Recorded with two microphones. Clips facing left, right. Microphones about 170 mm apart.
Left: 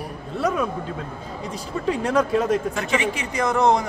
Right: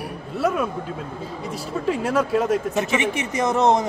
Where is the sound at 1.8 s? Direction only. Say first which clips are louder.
Left 1 dB; 5° right (ahead or behind).